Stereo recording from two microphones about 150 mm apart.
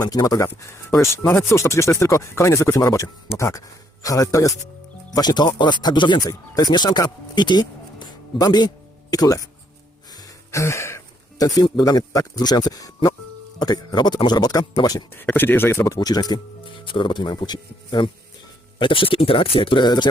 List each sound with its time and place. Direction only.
0.0 s speech: 25° left (ahead or behind)
15.1 s speech: 15° left (ahead or behind); by 20.1 s 30° left (ahead or behind)